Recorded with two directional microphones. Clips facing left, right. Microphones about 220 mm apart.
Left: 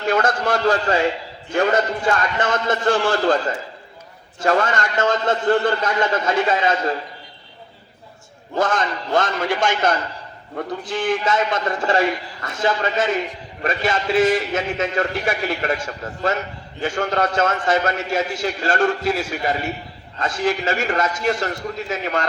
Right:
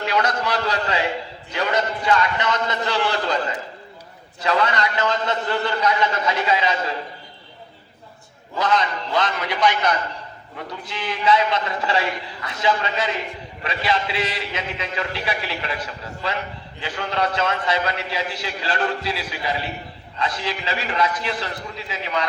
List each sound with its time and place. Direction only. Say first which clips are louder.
0.0 s a man's voice: left 3 dB; 50° left (ahead or behind)
4.4 s a man's voice: left 2 dB; 45° left (ahead or behind)
8.5 s a man's voice: left 1 dB; 50° left (ahead or behind)